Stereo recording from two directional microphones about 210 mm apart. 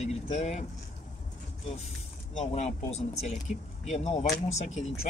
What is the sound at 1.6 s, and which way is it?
Speech, 30° left (ahead or behind).